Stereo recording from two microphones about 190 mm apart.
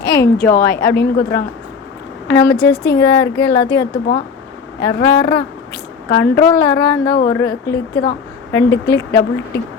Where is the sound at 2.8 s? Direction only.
65° left (ahead or behind).